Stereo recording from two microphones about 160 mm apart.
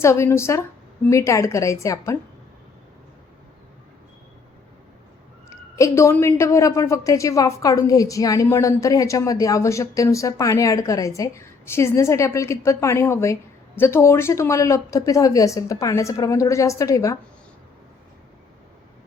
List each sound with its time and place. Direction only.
0.0 s a woman's voice: 15° left (ahead or behind)
5.7 s a woman's voice: 20° left (ahead or behind)